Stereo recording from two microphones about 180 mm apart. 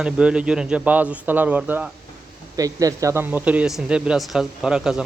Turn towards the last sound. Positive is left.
turn(degrees=-5)  # may be behind; listen again after turning